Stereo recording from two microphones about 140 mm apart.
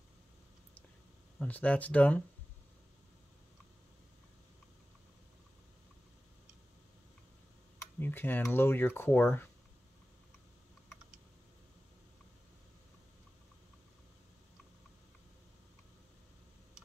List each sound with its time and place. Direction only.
1.4 s speech: 10° left (ahead or behind)
8.0 s speech: 15° left (ahead or behind)